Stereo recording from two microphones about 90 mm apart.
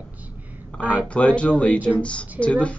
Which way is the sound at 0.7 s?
15° left (ahead or behind).